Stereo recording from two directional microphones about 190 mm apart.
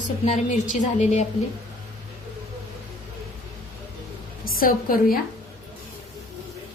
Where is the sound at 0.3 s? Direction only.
40° left (ahead or behind).